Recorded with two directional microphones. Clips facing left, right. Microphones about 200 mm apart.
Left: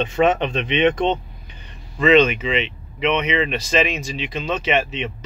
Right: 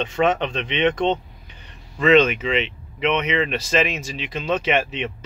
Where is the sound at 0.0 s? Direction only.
10° left (ahead or behind).